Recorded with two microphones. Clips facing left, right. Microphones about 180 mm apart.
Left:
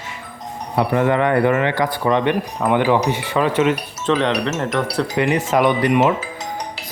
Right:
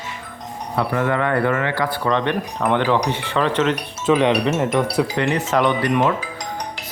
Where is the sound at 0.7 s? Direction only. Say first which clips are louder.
Left 3 dB; 20° left (ahead or behind).